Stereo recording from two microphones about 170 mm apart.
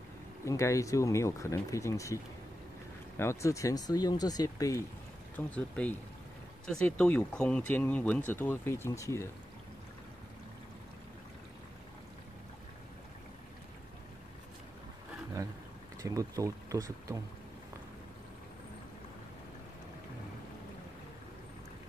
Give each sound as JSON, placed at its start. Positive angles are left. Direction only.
{"t": 0.5, "sound": "speech", "side_deg": 20}
{"t": 3.2, "sound": "speech", "side_deg": 15}
{"t": 5.3, "sound": "speech", "side_deg": 10}
{"t": 16.0, "sound": "speech", "side_deg": -20}